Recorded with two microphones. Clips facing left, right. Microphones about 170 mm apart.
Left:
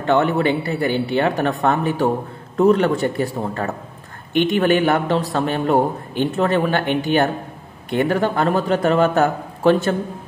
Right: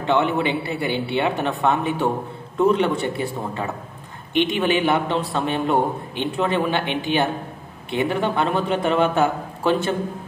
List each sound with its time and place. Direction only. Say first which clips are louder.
0.0 s a man's voice: left 3 dB; 45° left (ahead or behind)